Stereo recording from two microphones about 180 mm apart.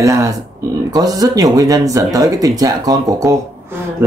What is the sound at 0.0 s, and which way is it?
Speech, 15° right (ahead or behind).